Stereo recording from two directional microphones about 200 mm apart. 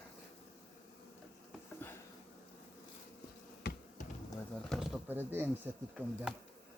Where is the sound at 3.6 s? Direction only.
55° left (ahead or behind).